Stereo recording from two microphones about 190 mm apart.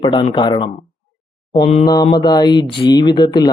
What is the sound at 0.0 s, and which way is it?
Speech, 25° left (ahead or behind).